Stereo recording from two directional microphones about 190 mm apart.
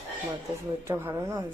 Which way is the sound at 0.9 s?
10° right (ahead or behind).